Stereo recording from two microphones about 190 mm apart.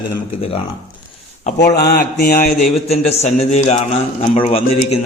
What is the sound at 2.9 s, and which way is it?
Speech, 35° left (ahead or behind).